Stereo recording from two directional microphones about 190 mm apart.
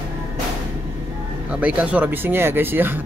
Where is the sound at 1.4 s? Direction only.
5° right (ahead or behind).